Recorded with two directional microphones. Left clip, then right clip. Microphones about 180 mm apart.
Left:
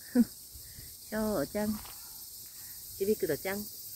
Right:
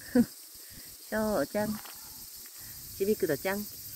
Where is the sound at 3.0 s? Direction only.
50° right (ahead or behind).